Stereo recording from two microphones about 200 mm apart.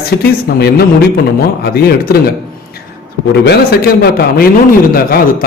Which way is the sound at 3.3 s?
55° left (ahead or behind).